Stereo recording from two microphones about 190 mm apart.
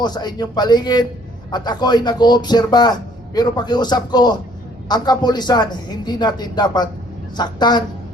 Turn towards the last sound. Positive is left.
turn(degrees=20)  # may be behind; listen again after turning